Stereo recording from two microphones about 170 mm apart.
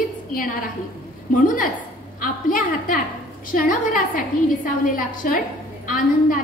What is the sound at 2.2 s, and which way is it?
A woman's voice, 55° left (ahead or behind).